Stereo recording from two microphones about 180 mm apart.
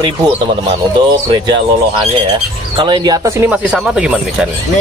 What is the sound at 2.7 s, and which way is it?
Speech, 25° right (ahead or behind).